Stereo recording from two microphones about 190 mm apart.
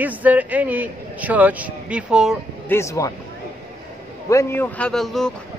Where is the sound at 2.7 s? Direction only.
15° left (ahead or behind).